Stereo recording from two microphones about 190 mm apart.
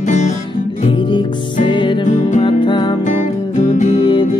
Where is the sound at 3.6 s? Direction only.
40° left (ahead or behind).